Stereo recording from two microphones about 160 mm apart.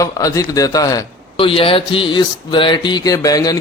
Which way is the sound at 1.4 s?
35° left (ahead or behind).